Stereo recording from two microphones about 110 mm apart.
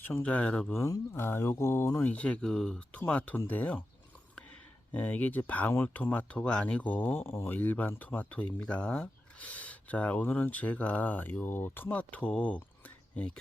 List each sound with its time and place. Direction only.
0.0 s speech: 15° left (ahead or behind)
0.7 s speech: 25° left (ahead or behind)
2.0 s speech: 10° left (ahead or behind)
4.9 s speech: 15° left (ahead or behind)